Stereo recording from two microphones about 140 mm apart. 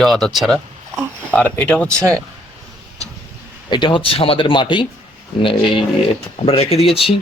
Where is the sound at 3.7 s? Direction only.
35° left (ahead or behind).